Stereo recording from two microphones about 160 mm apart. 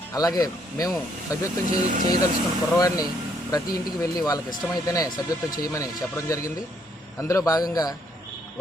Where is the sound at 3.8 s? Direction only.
25° left (ahead or behind).